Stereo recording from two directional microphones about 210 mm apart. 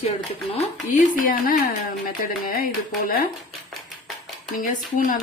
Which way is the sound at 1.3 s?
45° left (ahead or behind).